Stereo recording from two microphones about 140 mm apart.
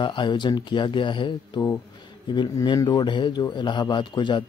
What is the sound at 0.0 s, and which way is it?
Speech, 35° left (ahead or behind).